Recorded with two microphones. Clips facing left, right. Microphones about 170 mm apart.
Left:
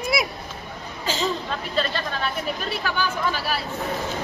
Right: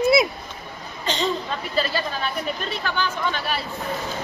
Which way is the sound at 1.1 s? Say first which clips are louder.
Right 1 dB; 5° left (ahead or behind).